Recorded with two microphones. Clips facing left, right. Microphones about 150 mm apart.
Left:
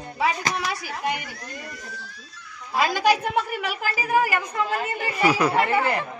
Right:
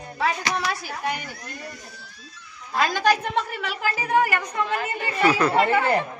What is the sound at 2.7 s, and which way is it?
A woman's voice, 10° left (ahead or behind).